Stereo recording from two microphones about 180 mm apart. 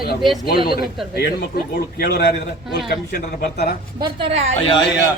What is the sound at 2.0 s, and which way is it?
Speech, 60° left (ahead or behind).